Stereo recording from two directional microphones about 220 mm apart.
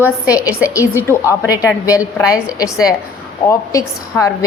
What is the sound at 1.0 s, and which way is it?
Speech, 10° left (ahead or behind).